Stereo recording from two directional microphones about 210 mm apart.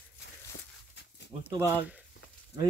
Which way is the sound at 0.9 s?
55° left (ahead or behind).